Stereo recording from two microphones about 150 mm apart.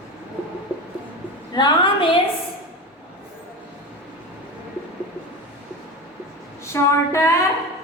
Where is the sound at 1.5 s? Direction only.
30° left (ahead or behind).